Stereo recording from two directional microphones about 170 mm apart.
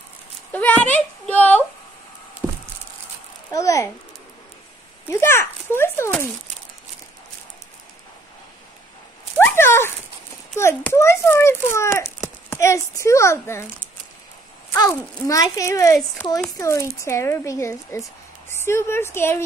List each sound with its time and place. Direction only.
0.5 s speech: 10° left (ahead or behind)
2.4 s a sound: 10° right (ahead or behind)
3.5 s speech: 20° left (ahead or behind)
5.1 s a child's voice: 15° left (ahead or behind)
9.4 s a child's voice: 15° left (ahead or behind)
14.7 s a child's voice: 15° left (ahead or behind)